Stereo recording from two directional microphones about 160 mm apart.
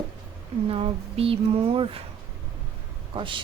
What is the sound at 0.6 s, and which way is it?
Speech, 35° right (ahead or behind).